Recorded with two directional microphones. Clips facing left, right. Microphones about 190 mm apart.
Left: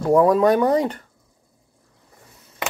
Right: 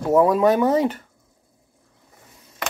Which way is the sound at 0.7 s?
25° right (ahead or behind).